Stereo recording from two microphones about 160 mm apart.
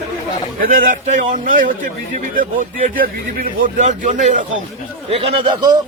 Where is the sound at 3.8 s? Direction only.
50° right (ahead or behind).